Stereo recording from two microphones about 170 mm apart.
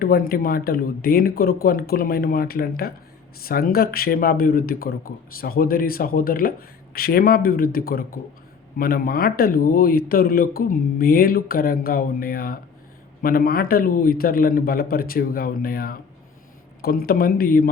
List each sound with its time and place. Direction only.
0.0 s speech: 60° left (ahead or behind)